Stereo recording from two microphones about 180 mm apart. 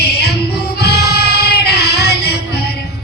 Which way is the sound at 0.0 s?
65° left (ahead or behind).